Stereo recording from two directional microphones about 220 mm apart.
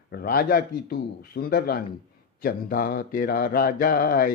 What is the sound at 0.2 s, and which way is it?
A man's voice, 45° left (ahead or behind).